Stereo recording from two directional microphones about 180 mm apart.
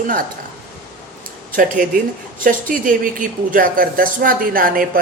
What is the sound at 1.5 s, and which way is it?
Speech, 50° right (ahead or behind).